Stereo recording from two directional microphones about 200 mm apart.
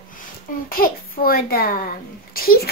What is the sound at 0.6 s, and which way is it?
A woman's voice, 45° left (ahead or behind).